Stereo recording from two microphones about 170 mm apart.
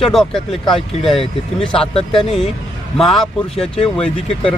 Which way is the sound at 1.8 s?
35° left (ahead or behind).